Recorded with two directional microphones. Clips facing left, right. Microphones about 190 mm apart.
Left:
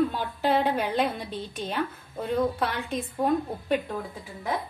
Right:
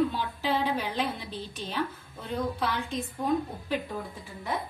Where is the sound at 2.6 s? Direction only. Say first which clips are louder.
Left 2 dB; 60° left (ahead or behind).